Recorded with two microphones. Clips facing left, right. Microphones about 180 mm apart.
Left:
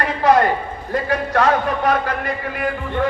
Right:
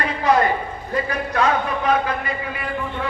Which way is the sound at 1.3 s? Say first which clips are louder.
Left 3 dB; 45° left (ahead or behind).